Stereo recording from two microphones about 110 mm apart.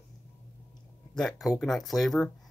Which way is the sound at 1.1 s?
5° left (ahead or behind).